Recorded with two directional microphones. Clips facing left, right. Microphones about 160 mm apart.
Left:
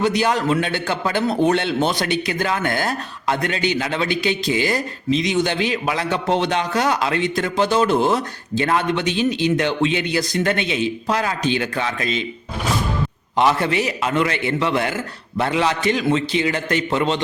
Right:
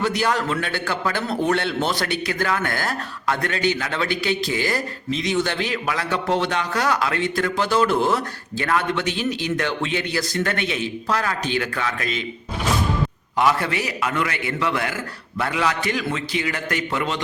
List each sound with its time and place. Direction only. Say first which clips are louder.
0.0 s a man's voice: left 3 dB; 20° left (ahead or behind)
13.3 s a man's voice: left 3 dB; 25° left (ahead or behind)